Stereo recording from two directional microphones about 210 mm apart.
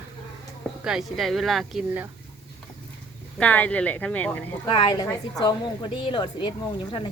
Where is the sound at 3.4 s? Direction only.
5° left (ahead or behind).